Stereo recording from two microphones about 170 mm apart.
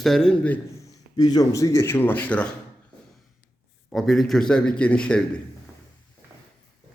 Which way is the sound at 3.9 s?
Centre (ahead or behind).